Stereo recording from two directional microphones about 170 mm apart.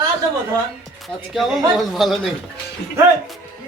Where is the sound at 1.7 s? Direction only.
Centre (ahead or behind).